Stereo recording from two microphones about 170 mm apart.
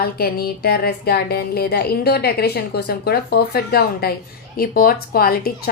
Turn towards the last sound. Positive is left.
turn(degrees=65)  # may be behind; listen again after turning